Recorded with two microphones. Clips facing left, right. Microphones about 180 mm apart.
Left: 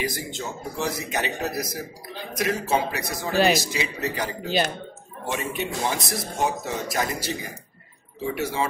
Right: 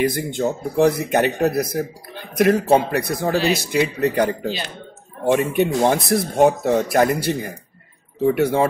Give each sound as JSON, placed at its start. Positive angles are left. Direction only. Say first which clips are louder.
{"t": 0.0, "sound": "speech", "louder": "right 10 dB", "side_deg": -55}